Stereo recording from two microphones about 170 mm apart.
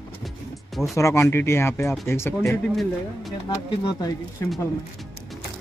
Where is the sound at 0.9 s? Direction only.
15° left (ahead or behind).